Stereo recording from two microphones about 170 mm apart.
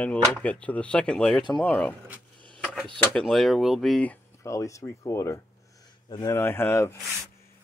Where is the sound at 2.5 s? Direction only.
5° left (ahead or behind).